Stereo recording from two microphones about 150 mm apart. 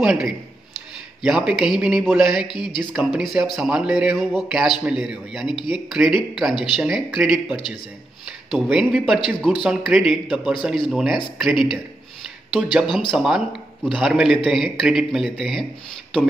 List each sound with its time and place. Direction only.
0.0 s a man's voice: 5° right (ahead or behind)
2.5 s speech: 30° left (ahead or behind)
3.0 s a man's voice: 5° right (ahead or behind)
6.5 s speech: 30° left (ahead or behind)
6.8 s a man's voice: 5° right (ahead or behind)
13.1 s a man's voice: centre (ahead or behind)